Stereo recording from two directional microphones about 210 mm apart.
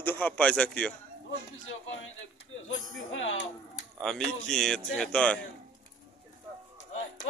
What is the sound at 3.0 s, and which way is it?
Speech, 65° left (ahead or behind).